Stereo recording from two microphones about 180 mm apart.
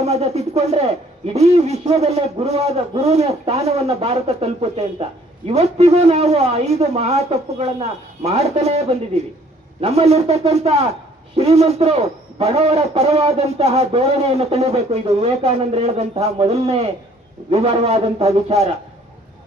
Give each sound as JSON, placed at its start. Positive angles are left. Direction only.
{"t": 0.0, "sound": "a man's voice", "side_deg": -35}